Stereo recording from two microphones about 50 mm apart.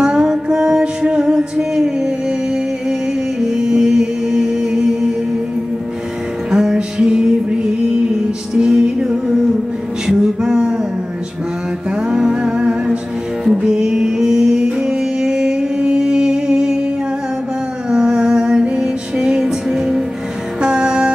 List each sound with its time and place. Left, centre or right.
0.0 s music: centre
6.5 s music: centre
8.5 s music: centre
12.1 s humming: centre
13.5 s music: centre
17.8 s music: centre